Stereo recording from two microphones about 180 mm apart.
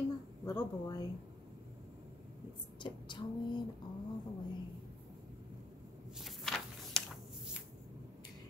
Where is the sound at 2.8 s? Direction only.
25° left (ahead or behind).